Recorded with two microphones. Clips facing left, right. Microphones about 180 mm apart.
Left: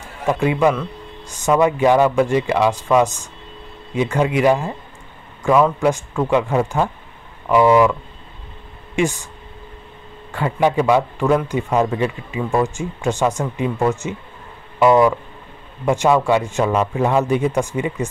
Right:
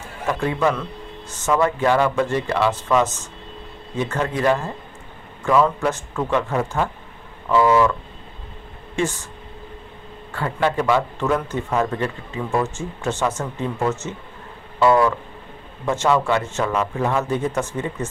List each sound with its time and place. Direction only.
0.3 s speech: 15° left (ahead or behind)
0.7 s a sound: centre (ahead or behind)
1.3 s speech: 15° left (ahead or behind)
8.9 s speech: 15° left (ahead or behind)
10.3 s speech: 15° left (ahead or behind)